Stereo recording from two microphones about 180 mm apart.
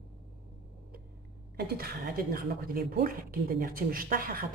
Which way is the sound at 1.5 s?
60° right (ahead or behind).